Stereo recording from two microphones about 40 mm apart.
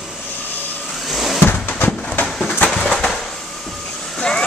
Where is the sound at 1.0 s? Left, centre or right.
Centre.